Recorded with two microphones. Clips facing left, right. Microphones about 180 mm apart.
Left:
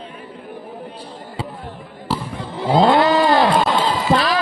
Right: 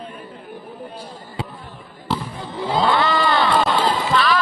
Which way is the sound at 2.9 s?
45° left (ahead or behind).